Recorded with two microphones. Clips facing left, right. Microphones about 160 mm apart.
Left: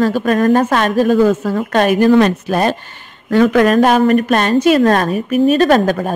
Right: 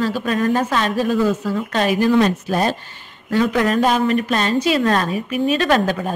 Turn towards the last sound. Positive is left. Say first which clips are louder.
# left 6 dB
turn(degrees=45)  # may be behind; listen again after turning